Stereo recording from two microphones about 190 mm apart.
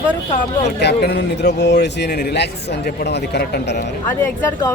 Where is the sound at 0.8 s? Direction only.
60° left (ahead or behind).